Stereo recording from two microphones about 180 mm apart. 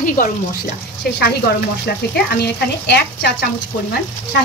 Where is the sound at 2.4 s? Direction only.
65° left (ahead or behind).